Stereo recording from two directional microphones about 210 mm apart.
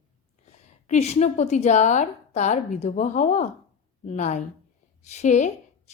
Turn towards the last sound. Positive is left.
turn(degrees=35)  # may be behind; listen again after turning